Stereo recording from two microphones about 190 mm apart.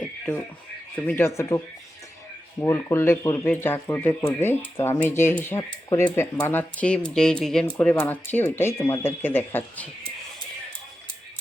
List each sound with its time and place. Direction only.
0.9 s speech: 10° left (ahead or behind)